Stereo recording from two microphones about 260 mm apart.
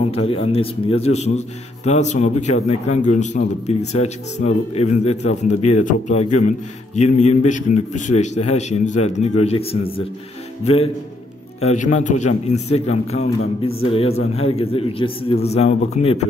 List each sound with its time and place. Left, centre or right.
0.1 s a man's voice: left